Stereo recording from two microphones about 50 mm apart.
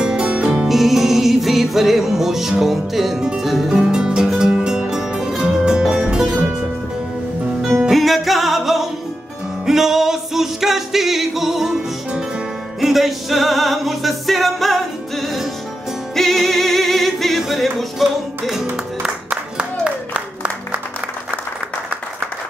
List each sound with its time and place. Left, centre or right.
0.0 s music: centre
0.7 s music: centre
7.9 s music: centre
12.8 s music: centre
16.2 s music: centre